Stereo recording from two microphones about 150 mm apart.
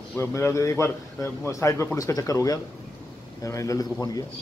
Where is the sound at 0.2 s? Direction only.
15° left (ahead or behind).